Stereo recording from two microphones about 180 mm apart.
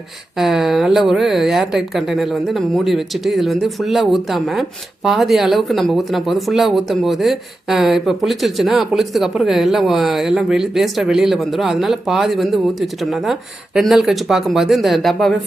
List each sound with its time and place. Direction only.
0.3 s speech: centre (ahead or behind)